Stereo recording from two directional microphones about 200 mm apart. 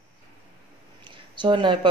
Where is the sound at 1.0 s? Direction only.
25° right (ahead or behind).